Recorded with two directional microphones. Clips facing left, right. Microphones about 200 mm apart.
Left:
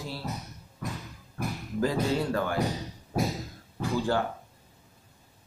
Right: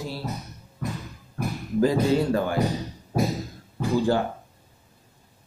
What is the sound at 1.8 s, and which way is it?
Speech, 20° right (ahead or behind).